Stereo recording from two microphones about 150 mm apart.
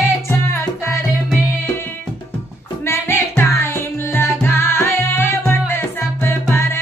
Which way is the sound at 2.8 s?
15° left (ahead or behind).